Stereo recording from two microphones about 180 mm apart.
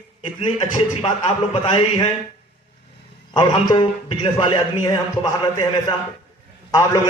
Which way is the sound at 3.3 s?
25° left (ahead or behind).